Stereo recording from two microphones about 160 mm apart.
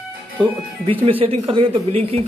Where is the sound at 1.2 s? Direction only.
35° right (ahead or behind).